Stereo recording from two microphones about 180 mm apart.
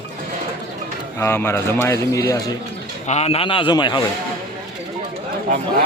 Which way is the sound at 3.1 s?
35° left (ahead or behind).